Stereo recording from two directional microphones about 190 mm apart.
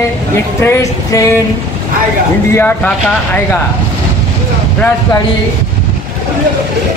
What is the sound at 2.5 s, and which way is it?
Speech, 10° left (ahead or behind).